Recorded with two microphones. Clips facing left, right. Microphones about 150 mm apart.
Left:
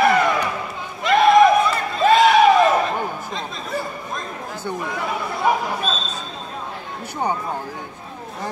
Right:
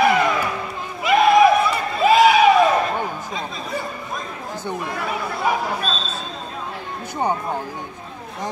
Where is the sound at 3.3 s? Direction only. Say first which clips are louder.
Even; 5° right (ahead or behind).